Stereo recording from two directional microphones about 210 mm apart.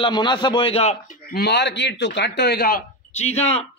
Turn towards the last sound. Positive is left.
turn(degrees=30)  # may be behind; listen again after turning